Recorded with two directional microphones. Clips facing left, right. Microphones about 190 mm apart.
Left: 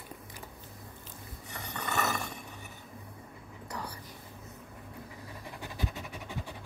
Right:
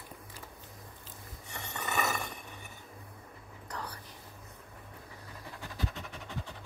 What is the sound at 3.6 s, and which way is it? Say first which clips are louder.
Whispering: left 1 dB; 10° left (ahead or behind).